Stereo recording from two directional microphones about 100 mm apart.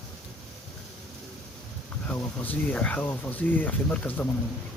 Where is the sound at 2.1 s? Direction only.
15° left (ahead or behind).